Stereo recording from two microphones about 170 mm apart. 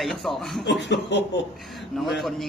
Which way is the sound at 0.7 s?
90° left.